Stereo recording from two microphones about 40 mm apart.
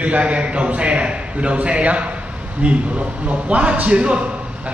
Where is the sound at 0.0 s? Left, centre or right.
Right.